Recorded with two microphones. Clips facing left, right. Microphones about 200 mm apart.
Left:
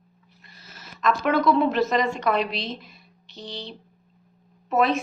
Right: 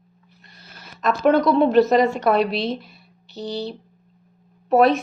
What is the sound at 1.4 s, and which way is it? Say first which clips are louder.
Speech: right 5 dB; 35° right (ahead or behind).